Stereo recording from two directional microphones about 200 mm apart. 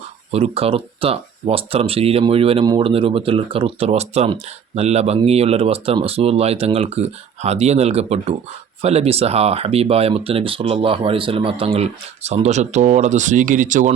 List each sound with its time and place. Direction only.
0.3 s speech: 30° right (ahead or behind)